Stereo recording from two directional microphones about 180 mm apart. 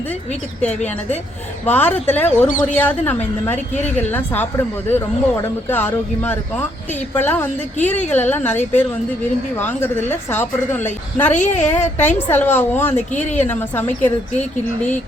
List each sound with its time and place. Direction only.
1.6 s a woman's voice: 10° left (ahead or behind)
11.3 s a woman's voice: 40° left (ahead or behind)
11.7 s a woman's voice: 10° left (ahead or behind)